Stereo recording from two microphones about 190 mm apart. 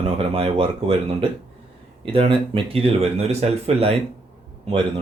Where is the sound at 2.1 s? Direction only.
30° right (ahead or behind).